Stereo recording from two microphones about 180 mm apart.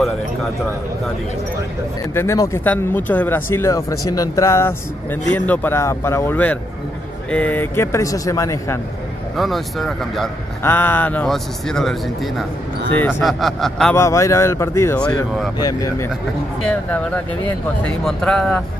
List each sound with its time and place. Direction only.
2.1 s speech: 15° left (ahead or behind)
9.4 s a man's voice: centre (ahead or behind)
10.6 s a man's voice: 10° left (ahead or behind)
13.9 s speech: 15° left (ahead or behind)
16.6 s a man's voice: 10° left (ahead or behind)